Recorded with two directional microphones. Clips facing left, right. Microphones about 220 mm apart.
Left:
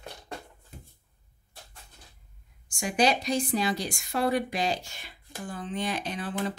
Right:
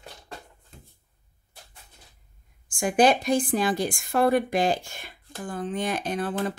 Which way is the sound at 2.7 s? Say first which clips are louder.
Right 5 dB; 50° right (ahead or behind).